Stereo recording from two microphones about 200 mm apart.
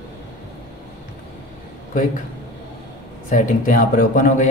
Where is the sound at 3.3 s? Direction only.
40° left (ahead or behind).